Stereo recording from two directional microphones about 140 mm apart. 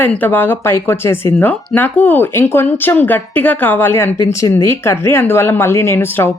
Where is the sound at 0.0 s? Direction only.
10° left (ahead or behind).